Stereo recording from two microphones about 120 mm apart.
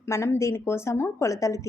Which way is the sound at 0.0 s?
20° left (ahead or behind).